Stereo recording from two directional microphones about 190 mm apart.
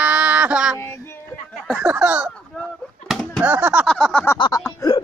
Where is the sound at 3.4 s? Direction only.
10° right (ahead or behind).